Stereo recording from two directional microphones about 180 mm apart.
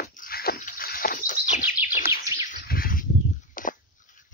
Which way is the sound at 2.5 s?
55° left (ahead or behind).